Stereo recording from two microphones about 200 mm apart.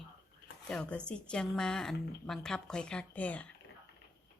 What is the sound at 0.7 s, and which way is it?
A woman's voice, 5° left (ahead or behind).